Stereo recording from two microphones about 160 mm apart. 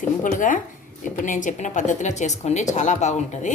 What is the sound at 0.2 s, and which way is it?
A woman's voice, 55° left (ahead or behind).